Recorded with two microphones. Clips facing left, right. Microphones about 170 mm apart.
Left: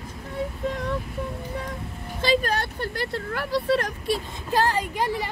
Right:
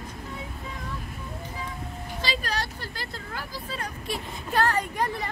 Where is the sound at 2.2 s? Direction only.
50° left (ahead or behind); by 3.9 s 75° left (ahead or behind).